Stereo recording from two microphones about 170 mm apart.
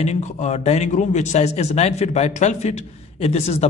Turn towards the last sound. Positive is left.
turn(degrees=40)  # may be behind; listen again after turning